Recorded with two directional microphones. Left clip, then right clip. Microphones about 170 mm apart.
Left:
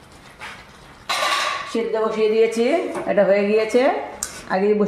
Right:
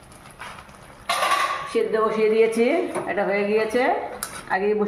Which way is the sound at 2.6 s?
75° left (ahead or behind).